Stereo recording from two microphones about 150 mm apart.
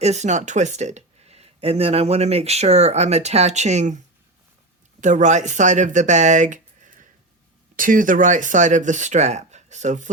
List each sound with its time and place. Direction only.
0.0 s speech: 50° right (ahead or behind)
4.9 s speech: 55° right (ahead or behind)